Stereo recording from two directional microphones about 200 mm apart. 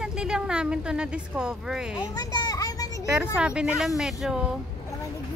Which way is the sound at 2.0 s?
20° left (ahead or behind).